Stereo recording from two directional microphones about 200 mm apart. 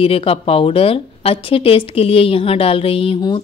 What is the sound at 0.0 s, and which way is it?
A woman's voice, 30° left (ahead or behind).